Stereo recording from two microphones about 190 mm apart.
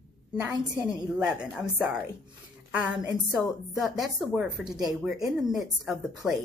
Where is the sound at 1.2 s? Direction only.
5° right (ahead or behind).